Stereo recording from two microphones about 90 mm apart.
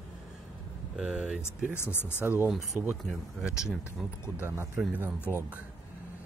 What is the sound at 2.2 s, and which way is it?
Speech, 20° right (ahead or behind).